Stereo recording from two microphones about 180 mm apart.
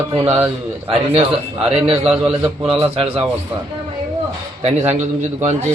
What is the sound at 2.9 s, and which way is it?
Speech, 35° right (ahead or behind).